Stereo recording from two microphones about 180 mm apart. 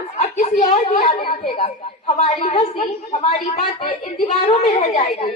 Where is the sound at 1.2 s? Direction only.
30° left (ahead or behind).